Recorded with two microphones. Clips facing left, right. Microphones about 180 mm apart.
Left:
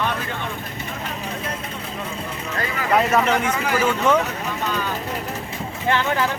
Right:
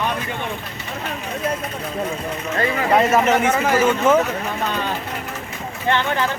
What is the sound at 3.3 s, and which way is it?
Speech, 40° right (ahead or behind).